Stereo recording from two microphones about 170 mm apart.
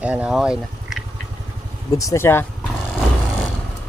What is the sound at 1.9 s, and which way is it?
Speech, 20° left (ahead or behind).